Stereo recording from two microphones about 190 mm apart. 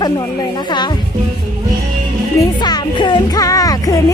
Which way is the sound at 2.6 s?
25° left (ahead or behind).